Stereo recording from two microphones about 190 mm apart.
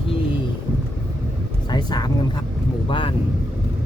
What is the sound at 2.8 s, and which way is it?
Speech, 25° left (ahead or behind).